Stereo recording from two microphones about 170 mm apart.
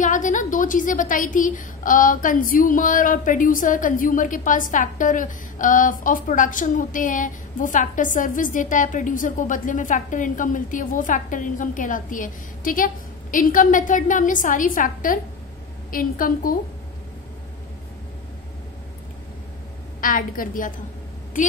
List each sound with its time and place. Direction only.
0.0 s a woman's voice: 50° left (ahead or behind)
20.0 s a woman's voice: 55° left (ahead or behind)